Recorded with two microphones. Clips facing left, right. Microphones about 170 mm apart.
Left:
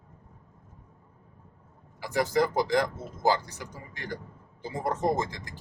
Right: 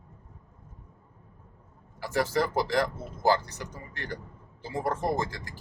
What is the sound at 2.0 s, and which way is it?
Speech, 15° left (ahead or behind).